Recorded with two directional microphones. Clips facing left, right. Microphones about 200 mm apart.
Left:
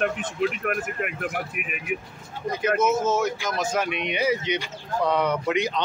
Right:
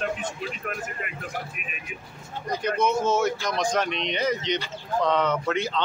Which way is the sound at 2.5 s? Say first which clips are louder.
Left 2 dB; 5° left (ahead or behind).